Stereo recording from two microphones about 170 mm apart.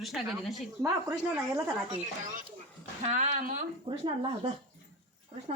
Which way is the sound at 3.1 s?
45° right (ahead or behind).